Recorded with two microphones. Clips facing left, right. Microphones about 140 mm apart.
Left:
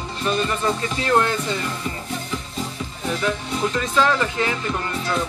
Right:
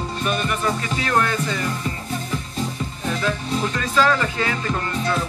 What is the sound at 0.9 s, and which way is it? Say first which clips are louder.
Music: left 3 dB; 25° left (ahead or behind).